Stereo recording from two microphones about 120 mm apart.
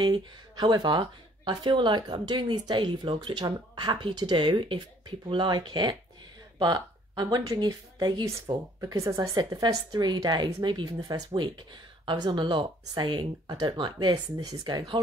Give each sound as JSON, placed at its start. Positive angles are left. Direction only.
{"t": 0.0, "sound": "a woman's voice", "side_deg": -35}